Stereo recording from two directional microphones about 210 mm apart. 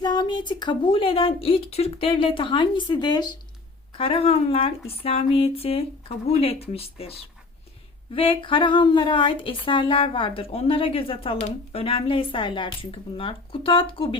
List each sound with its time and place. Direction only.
0.0 s a woman's voice: 20° left (ahead or behind)
8.1 s a woman's voice: 25° left (ahead or behind)